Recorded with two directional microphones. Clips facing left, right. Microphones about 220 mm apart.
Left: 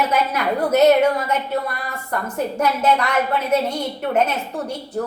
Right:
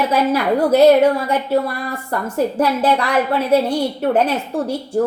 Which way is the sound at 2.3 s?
30° right (ahead or behind).